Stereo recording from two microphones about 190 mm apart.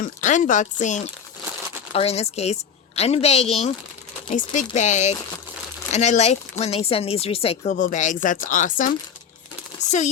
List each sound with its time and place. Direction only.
0.0 s a woman's voice: 40° left (ahead or behind)